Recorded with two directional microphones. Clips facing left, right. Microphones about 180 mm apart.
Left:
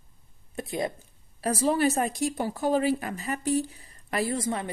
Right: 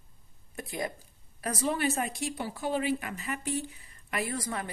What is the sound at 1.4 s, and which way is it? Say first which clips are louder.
A woman's voice: left 6 dB; 30° left (ahead or behind).